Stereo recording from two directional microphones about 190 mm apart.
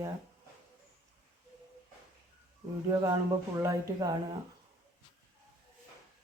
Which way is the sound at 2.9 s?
20° right (ahead or behind).